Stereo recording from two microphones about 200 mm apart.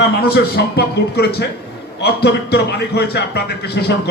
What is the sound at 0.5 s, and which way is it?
A man's voice, 55° left (ahead or behind).